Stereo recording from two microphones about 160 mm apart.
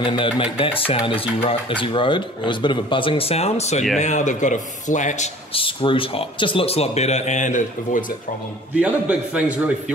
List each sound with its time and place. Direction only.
0.0 s a man's voice: 30° left (ahead or behind); by 8.0 s 50° left (ahead or behind)
8.7 s a man's voice: 10° right (ahead or behind)